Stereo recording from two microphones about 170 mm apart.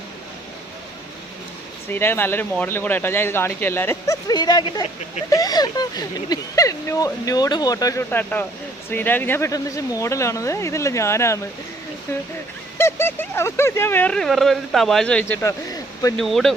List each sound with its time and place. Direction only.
1.9 s speech: 15° left (ahead or behind)
12.8 s speech: 15° left (ahead or behind)
16.1 s speech: centre (ahead or behind)